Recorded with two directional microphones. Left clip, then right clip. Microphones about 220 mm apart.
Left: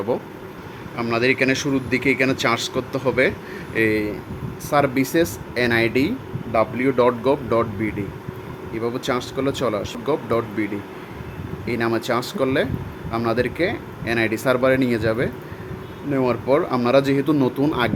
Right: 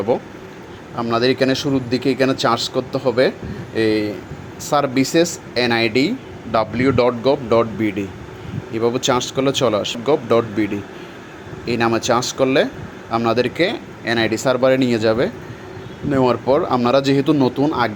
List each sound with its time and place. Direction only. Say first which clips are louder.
1.0 s speech: right 2 dB; 5° right (ahead or behind)